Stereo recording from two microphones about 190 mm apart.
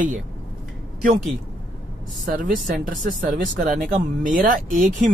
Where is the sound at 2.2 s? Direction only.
45° right (ahead or behind).